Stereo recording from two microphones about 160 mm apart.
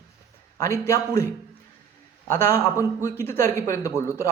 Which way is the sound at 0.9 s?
15° left (ahead or behind).